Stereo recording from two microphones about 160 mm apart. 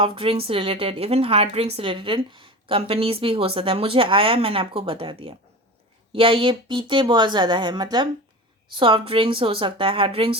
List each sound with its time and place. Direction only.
0.0 s a woman's voice: 35° right (ahead or behind)